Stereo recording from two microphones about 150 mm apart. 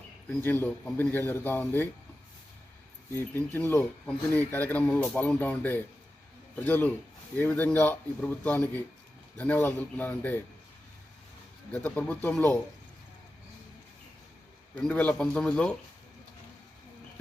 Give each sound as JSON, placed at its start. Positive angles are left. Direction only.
{"t": 0.3, "sound": "speech", "side_deg": 15}
{"t": 3.2, "sound": "speech", "side_deg": 15}
{"t": 11.7, "sound": "speech", "side_deg": 10}
{"t": 14.8, "sound": "speech", "side_deg": 10}